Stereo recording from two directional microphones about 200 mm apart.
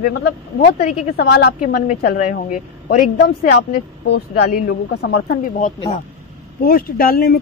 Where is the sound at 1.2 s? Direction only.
50° left (ahead or behind).